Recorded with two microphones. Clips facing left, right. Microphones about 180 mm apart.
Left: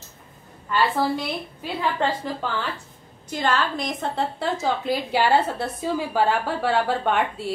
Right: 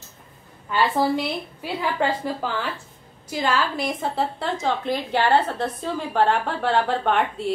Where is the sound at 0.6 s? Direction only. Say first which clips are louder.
Right 1 dB; 10° right (ahead or behind).